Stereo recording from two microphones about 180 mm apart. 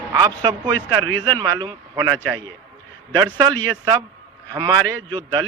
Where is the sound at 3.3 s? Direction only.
20° right (ahead or behind).